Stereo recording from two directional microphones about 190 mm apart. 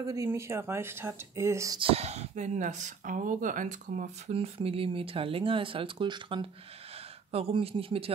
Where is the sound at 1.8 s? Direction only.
30° right (ahead or behind).